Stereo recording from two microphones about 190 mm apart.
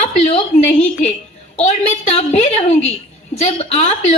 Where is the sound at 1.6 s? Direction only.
35° left (ahead or behind).